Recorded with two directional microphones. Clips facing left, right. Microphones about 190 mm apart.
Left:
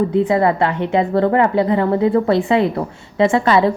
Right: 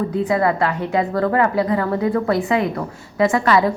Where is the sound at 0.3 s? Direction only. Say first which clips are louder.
Left 3 dB; 25° left (ahead or behind).